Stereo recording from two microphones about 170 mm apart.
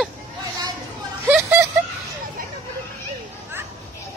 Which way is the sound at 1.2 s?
15° right (ahead or behind).